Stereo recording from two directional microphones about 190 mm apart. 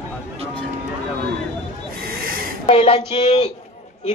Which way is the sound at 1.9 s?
50° right (ahead or behind).